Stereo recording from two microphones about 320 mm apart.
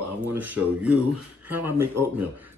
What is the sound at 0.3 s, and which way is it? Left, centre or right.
A man's voice, centre.